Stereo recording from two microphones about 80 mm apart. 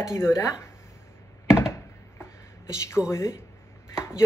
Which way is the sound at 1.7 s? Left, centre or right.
Left.